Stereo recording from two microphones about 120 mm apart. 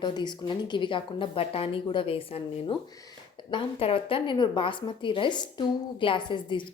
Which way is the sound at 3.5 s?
45° left (ahead or behind).